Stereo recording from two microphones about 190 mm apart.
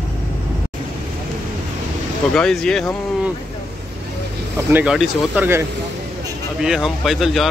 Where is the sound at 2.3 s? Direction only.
5° left (ahead or behind).